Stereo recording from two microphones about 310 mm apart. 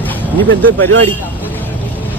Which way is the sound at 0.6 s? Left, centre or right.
Centre.